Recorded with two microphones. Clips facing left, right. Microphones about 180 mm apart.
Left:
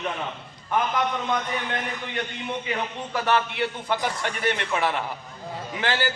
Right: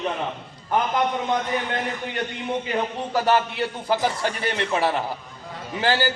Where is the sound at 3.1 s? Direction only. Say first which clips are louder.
Right 3 dB; 35° right (ahead or behind).